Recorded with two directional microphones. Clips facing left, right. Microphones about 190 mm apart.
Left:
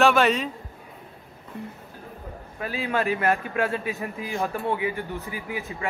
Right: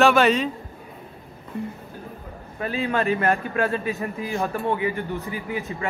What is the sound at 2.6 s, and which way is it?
Speech, 5° left (ahead or behind).